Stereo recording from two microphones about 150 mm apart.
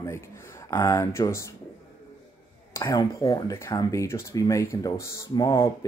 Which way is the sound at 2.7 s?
20° left (ahead or behind).